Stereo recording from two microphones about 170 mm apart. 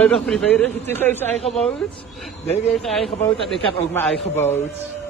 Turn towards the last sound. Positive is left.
turn(degrees=10)  # may be behind; listen again after turning